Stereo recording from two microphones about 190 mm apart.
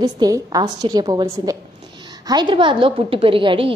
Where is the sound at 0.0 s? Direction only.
20° right (ahead or behind).